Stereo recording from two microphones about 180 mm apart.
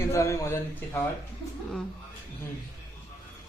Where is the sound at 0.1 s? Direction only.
15° left (ahead or behind).